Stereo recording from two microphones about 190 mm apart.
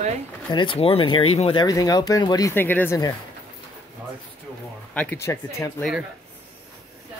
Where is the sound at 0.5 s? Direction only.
25° left (ahead or behind); by 3.0 s 10° left (ahead or behind).